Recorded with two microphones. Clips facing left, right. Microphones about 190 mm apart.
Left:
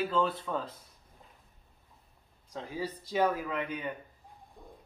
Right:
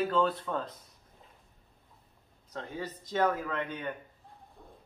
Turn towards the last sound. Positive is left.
turn(degrees=10)  # may be behind; listen again after turning